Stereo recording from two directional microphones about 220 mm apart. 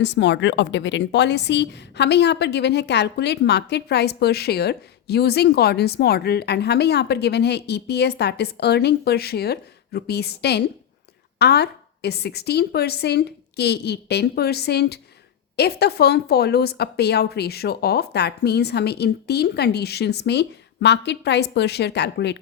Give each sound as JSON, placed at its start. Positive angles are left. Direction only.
{"t": 0.0, "sound": "a woman's voice", "side_deg": 55}